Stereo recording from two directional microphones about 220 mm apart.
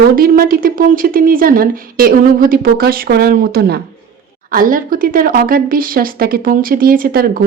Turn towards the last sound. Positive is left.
turn(degrees=-40)  # may be behind; listen again after turning